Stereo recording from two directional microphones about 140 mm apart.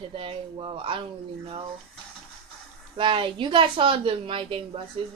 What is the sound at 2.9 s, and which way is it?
Speech, 35° right (ahead or behind).